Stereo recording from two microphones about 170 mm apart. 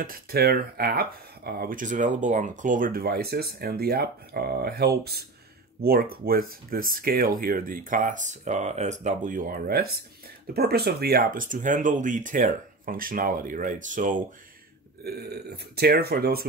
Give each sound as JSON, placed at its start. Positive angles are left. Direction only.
{"t": 0.0, "sound": "speech", "side_deg": -60}
{"t": 15.0, "sound": "speech", "side_deg": -70}